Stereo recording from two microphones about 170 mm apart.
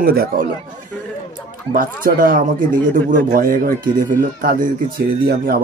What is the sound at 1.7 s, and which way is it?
Speech, 55° right (ahead or behind).